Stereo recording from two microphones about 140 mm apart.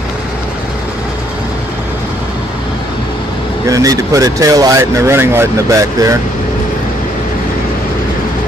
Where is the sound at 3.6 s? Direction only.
25° right (ahead or behind).